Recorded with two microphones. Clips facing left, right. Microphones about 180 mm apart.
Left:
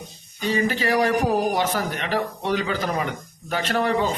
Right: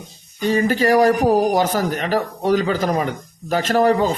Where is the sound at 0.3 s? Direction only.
45° right (ahead or behind).